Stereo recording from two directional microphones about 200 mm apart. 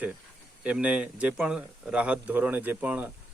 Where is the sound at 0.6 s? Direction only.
5° right (ahead or behind).